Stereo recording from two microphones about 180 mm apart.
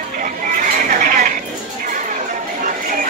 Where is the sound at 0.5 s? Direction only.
50° right (ahead or behind).